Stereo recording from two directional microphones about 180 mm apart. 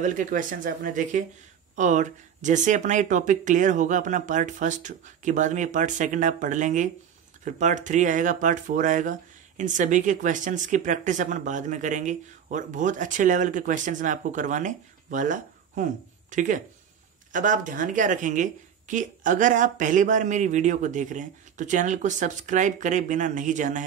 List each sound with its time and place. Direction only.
0.0 s speech: 45° right (ahead or behind)